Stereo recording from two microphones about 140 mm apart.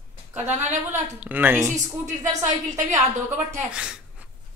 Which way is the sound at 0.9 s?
10° right (ahead or behind).